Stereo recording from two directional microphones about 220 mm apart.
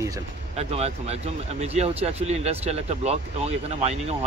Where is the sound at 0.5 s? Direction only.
30° right (ahead or behind).